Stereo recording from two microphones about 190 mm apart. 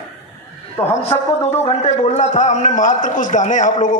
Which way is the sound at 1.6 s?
35° left (ahead or behind).